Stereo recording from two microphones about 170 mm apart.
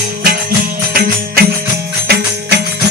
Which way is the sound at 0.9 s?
60° right (ahead or behind).